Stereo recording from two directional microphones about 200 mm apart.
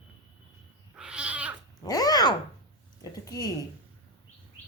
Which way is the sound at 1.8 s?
20° left (ahead or behind).